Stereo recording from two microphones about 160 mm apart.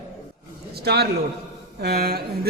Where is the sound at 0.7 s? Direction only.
90° right.